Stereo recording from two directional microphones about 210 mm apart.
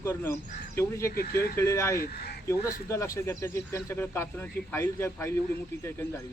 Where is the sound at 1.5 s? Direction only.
15° left (ahead or behind).